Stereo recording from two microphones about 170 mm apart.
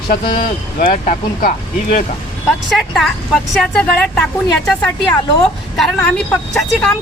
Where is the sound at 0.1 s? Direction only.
55° left (ahead or behind).